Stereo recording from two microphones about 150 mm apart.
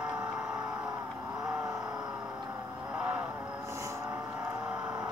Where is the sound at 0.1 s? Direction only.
5° right (ahead or behind).